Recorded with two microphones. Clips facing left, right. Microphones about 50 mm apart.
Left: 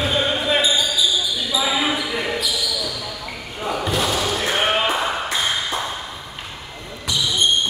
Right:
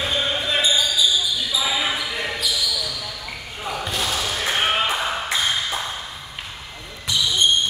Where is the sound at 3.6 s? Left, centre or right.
Centre.